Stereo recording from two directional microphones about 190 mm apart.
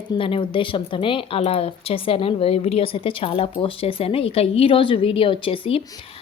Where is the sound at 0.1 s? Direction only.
25° left (ahead or behind).